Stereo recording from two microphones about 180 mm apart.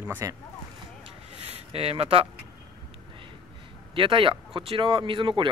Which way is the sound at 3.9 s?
30° right (ahead or behind).